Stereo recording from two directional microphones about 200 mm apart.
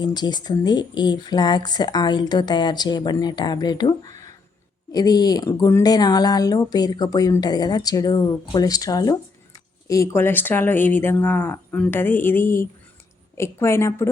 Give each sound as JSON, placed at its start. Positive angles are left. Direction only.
{"t": 0.0, "sound": "speech", "side_deg": 20}